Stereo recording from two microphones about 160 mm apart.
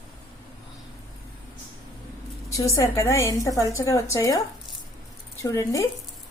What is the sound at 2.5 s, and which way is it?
A woman's voice, 20° left (ahead or behind).